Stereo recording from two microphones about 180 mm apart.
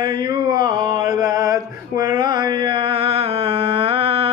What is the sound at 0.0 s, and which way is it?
Mantra, 25° right (ahead or behind).